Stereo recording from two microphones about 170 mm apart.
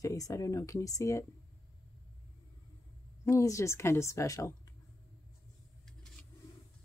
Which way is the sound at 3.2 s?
20° left (ahead or behind).